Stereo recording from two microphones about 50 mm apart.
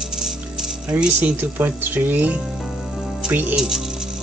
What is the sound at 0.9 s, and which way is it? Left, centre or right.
Speech, right.